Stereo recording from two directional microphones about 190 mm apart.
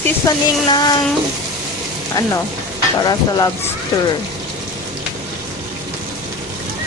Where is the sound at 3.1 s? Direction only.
20° left (ahead or behind).